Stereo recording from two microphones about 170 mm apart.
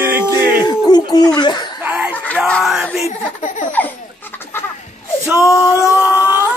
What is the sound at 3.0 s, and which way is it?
Speech, 40° left (ahead or behind).